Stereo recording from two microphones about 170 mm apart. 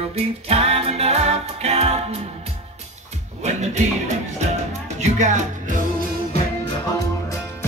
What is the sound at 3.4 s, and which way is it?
Speech, 40° right (ahead or behind).